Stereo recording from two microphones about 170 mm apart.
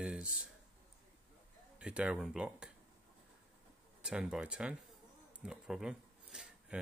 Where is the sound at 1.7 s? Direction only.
5° right (ahead or behind).